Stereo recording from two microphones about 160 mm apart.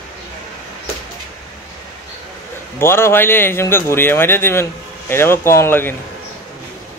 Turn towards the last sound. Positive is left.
turn(degrees=15)  # may be behind; listen again after turning